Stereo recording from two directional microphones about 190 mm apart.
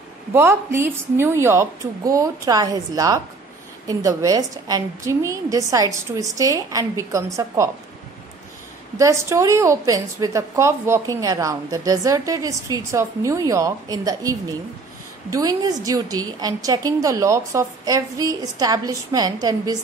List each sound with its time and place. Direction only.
0.3 s a woman's voice: 10° right (ahead or behind)
8.9 s a woman's voice: 15° right (ahead or behind)